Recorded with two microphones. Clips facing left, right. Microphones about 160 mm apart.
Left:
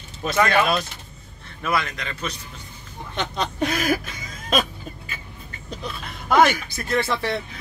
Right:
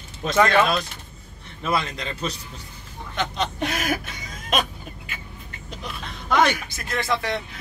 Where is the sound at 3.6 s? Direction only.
40° left (ahead or behind).